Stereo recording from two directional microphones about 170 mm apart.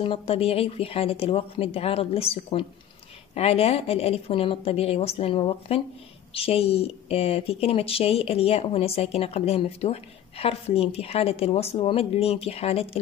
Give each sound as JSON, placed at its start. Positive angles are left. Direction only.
{"t": 0.0, "sound": "a woman's voice", "side_deg": 35}